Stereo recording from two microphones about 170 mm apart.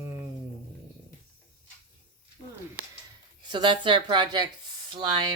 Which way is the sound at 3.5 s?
25° right (ahead or behind).